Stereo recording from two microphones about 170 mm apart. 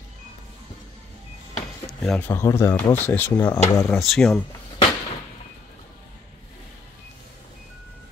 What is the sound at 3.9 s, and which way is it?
Speech, centre (ahead or behind).